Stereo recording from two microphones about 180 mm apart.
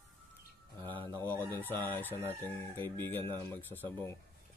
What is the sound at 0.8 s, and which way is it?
Speech, 25° right (ahead or behind).